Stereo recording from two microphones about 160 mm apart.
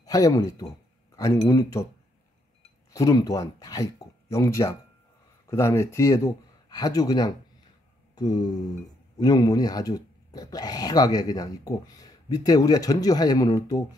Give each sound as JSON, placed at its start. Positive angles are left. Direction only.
{"t": 0.0, "sound": "speech", "side_deg": 20}
{"t": 2.9, "sound": "speech", "side_deg": 20}
{"t": 8.1, "sound": "a sound", "side_deg": 25}
{"t": 9.2, "sound": "speech", "side_deg": 25}